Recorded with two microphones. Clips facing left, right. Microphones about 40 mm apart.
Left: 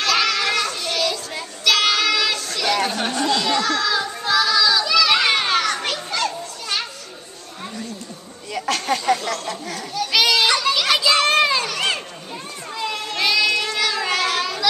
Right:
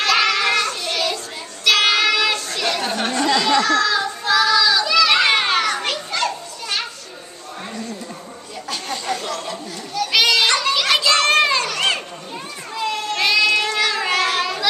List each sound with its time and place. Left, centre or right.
0.0 s children playing: centre
3.1 s chatter: right
3.6 s children playing: centre
8.5 s a sound: left
9.9 s children playing: centre
13.6 s cat: centre